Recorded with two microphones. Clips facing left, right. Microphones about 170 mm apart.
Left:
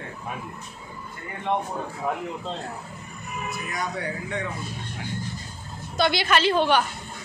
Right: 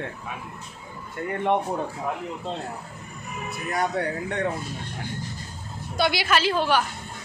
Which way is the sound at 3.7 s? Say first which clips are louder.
Right 7 dB; 60° right (ahead or behind).